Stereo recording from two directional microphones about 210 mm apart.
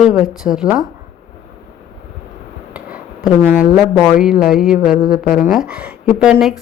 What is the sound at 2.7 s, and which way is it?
Speech, 5° right (ahead or behind).